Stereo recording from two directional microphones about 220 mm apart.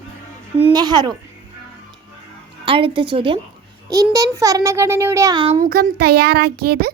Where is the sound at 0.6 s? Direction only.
20° right (ahead or behind).